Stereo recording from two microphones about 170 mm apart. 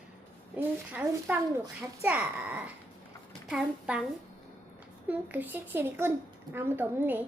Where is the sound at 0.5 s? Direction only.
10° right (ahead or behind).